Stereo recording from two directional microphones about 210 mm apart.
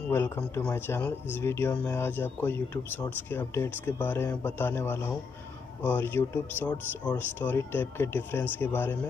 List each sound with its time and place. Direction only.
0.1 s speech: 10° left (ahead or behind)